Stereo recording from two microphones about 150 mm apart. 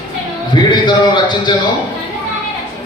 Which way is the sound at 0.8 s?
30° left (ahead or behind).